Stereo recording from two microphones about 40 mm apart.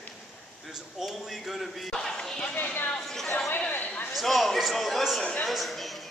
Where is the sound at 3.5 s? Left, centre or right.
Left.